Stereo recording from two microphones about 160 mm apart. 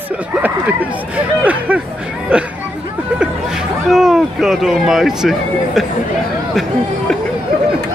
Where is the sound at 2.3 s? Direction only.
5° right (ahead or behind).